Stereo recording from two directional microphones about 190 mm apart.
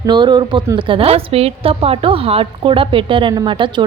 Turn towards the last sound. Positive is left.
turn(degrees=-25)  # may be behind; listen again after turning